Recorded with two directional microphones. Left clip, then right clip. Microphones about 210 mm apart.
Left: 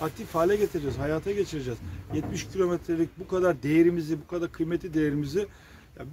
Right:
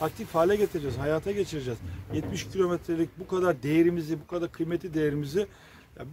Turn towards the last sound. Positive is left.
turn(degrees=-15)  # may be behind; listen again after turning